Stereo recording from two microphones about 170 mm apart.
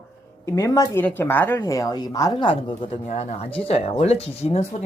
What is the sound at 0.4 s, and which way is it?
A woman's voice, 20° left (ahead or behind).